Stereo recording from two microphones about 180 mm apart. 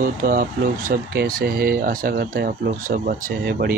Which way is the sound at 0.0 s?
55° right (ahead or behind).